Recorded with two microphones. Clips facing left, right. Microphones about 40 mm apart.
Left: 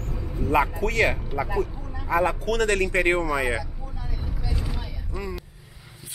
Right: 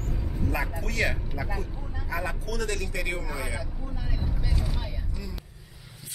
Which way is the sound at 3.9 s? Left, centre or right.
Right.